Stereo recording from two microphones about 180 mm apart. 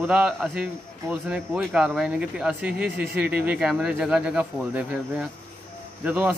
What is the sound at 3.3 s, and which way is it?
Speech, 5° right (ahead or behind).